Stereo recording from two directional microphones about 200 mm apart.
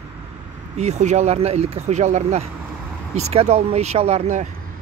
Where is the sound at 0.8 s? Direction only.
35° right (ahead or behind).